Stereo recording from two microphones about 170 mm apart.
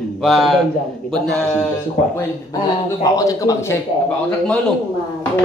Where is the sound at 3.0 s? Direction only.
20° left (ahead or behind).